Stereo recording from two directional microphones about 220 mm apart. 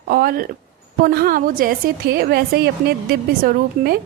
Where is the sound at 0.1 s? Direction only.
40° right (ahead or behind).